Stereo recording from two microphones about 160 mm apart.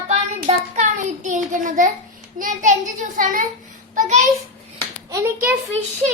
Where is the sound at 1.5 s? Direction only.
55° right (ahead or behind).